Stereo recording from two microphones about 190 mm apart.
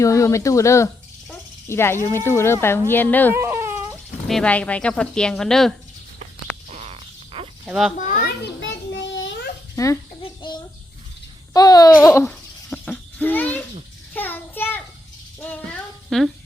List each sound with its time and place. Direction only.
0.0 s speech: 15° left (ahead or behind)
3.3 s baby cry: 15° right (ahead or behind)
4.3 s speech: 5° left (ahead or behind)
6.7 s a sound: 35° right (ahead or behind)
7.6 s a child's voice: centre (ahead or behind)
8.6 s child singing: 75° left (ahead or behind)
9.7 s speech: 15° left (ahead or behind)
10.4 s bird: 25° left (ahead or behind)
11.5 s a sound: 20° left (ahead or behind)
14.1 s child singing: 10° left (ahead or behind)
16.0 s speech: centre (ahead or behind)